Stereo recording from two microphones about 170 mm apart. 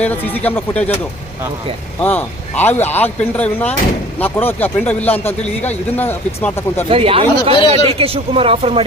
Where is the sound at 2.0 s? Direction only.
10° left (ahead or behind).